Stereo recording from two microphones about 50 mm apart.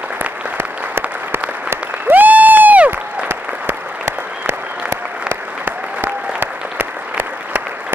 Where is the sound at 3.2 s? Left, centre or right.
Right.